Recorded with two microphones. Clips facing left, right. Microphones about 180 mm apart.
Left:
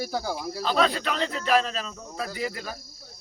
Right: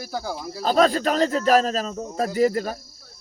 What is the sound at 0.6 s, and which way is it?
Speech, 45° right (ahead or behind).